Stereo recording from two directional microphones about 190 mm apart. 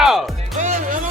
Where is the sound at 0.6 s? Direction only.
40° right (ahead or behind).